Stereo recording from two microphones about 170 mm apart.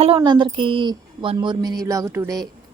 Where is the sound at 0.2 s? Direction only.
25° right (ahead or behind).